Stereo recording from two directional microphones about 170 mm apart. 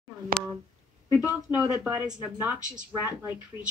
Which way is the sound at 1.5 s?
5° right (ahead or behind).